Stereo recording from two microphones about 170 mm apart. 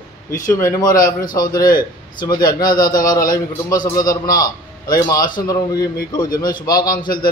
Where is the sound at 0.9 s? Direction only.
55° left (ahead or behind).